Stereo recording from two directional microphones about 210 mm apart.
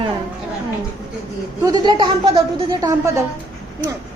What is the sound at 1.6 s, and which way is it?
A woman's voice, 20° right (ahead or behind).